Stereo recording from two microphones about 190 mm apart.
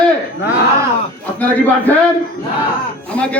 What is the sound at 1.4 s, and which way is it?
Speech, 10° left (ahead or behind).